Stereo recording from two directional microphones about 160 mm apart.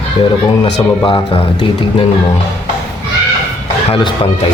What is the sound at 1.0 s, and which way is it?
Speech, 30° left (ahead or behind).